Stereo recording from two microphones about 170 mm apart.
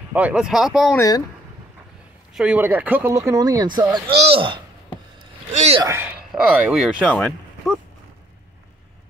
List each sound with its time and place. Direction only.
0.1 s speech: 5° right (ahead or behind)
0.9 s speech: 20° left (ahead or behind)
2.3 s speech: 5° right (ahead or behind); by 4.0 s 25° right (ahead or behind)
4.1 s speech: 35° right (ahead or behind)
5.9 s speech: 10° right (ahead or behind)